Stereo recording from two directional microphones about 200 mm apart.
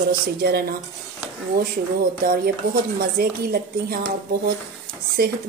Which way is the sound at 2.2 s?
50° right (ahead or behind).